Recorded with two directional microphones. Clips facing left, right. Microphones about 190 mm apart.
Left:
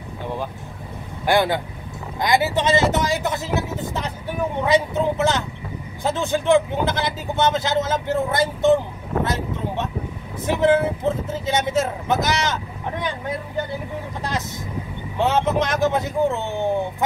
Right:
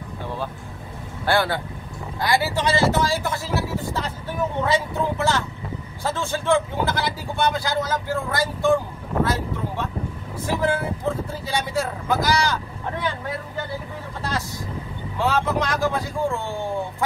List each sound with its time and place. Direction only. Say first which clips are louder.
1.2 s speech: left 3 dB; 15° left (ahead or behind)
15.1 s speech: left 3 dB; 20° left (ahead or behind)